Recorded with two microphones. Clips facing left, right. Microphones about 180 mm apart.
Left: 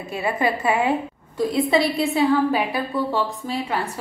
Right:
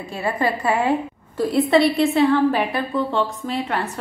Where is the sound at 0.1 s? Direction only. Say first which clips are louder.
Even; 20° left (ahead or behind).